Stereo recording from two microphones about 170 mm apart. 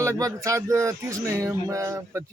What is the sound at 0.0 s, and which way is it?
Speech, 15° right (ahead or behind).